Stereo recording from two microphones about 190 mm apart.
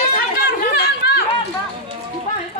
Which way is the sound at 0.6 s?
55° left (ahead or behind).